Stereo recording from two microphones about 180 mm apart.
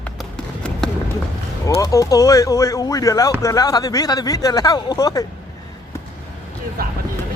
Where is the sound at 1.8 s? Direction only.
20° left (ahead or behind).